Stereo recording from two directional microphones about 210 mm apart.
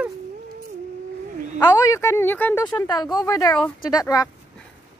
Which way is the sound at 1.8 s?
15° left (ahead or behind).